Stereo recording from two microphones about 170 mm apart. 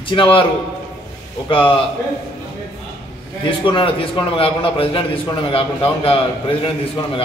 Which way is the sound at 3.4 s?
30° left (ahead or behind).